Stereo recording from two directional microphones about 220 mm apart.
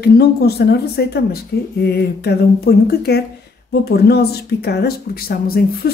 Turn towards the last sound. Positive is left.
turn(degrees=45)  # may be behind; listen again after turning